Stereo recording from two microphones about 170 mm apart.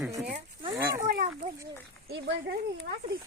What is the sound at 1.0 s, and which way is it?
Speech, 60° right (ahead or behind).